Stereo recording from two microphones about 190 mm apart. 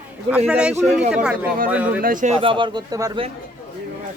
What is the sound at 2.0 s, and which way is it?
Speech, 40° right (ahead or behind).